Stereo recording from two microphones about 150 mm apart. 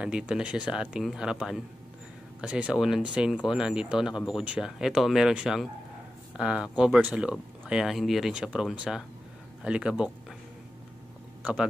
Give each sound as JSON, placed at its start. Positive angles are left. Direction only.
{"t": 0.0, "sound": "speech", "side_deg": -5}